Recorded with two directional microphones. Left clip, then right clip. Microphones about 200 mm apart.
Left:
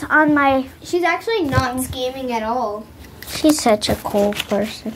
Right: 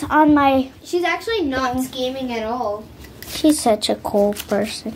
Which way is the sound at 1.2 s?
10° left (ahead or behind).